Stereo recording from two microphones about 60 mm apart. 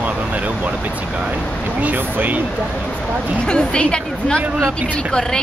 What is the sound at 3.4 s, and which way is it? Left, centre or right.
Speech, centre.